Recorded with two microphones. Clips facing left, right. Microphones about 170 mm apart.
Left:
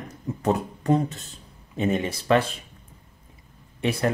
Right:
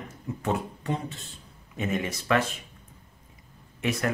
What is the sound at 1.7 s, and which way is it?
Speech, 30° left (ahead or behind).